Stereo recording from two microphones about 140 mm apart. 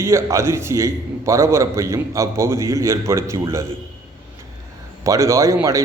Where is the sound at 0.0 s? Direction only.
20° right (ahead or behind).